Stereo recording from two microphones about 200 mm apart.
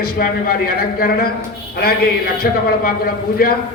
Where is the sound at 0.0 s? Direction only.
45° left (ahead or behind).